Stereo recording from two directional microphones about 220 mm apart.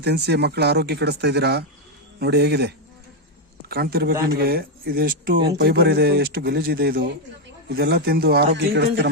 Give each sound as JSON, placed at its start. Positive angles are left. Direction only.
{"t": 0.0, "sound": "a man's voice", "side_deg": -50}